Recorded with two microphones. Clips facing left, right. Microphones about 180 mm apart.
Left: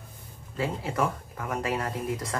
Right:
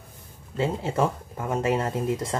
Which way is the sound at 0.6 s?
25° right (ahead or behind).